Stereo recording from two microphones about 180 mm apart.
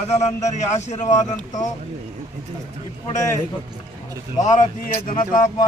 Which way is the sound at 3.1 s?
20° left (ahead or behind).